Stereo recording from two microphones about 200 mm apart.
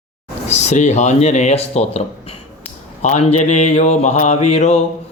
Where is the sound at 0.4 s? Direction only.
35° left (ahead or behind).